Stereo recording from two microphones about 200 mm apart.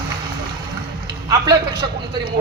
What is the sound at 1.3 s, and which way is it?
Speech, 20° right (ahead or behind).